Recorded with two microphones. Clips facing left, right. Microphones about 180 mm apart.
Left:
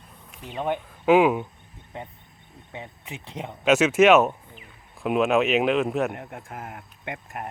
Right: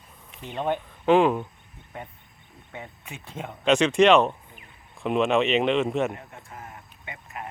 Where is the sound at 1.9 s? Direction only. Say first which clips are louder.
Left 2 dB; 20° left (ahead or behind).